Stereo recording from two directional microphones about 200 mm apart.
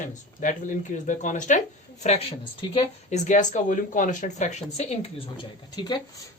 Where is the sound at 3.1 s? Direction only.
40° left (ahead or behind); by 6.0 s 20° left (ahead or behind).